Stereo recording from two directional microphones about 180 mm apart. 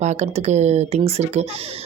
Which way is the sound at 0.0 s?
40° right (ahead or behind).